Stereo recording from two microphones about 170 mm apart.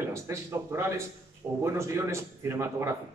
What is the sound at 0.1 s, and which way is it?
A man's voice, 15° right (ahead or behind).